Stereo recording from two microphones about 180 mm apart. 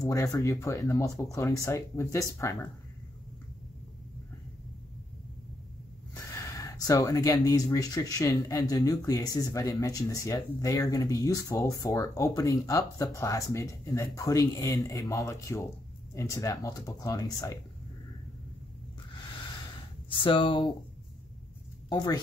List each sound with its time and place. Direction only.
0.1 s speech: 15° left (ahead or behind)
6.4 s speech: 15° left (ahead or behind)
20.2 s speech: 30° left (ahead or behind)
21.8 s speech: 20° left (ahead or behind)